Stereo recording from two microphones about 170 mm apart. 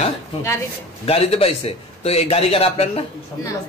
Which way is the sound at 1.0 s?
35° left (ahead or behind).